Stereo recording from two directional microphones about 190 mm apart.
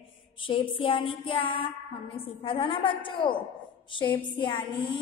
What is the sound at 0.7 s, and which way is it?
A woman's voice, 25° left (ahead or behind).